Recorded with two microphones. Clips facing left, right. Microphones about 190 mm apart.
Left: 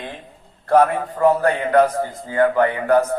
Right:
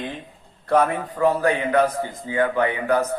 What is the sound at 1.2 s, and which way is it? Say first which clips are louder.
A man's voice: left 3 dB; 50° left (ahead or behind).